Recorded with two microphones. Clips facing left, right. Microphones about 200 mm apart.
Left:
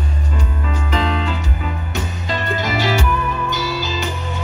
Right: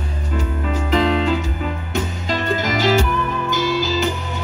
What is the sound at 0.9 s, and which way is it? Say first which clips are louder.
Music: right 5 dB; 45° right (ahead or behind).